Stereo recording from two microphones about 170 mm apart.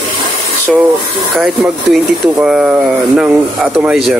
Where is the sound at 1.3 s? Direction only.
Centre (ahead or behind).